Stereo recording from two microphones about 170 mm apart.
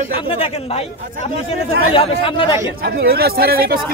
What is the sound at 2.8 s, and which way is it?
Speech, 65° right (ahead or behind).